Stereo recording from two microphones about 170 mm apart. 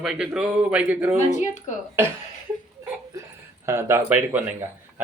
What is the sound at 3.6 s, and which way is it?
Speech, 15° right (ahead or behind).